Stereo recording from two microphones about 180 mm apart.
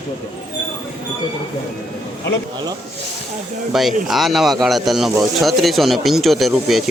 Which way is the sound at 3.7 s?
Centre (ahead or behind).